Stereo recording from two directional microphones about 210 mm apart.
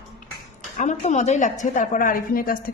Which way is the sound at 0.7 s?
35° left (ahead or behind).